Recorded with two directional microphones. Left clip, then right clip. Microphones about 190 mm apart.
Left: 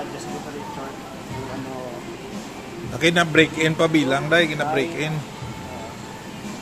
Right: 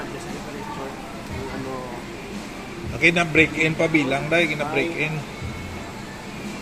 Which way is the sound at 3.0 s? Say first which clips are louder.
Even; 30° left (ahead or behind).